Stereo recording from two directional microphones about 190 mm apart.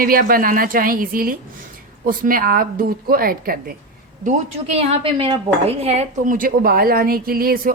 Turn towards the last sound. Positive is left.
turn(degrees=-50)  # may be behind; listen again after turning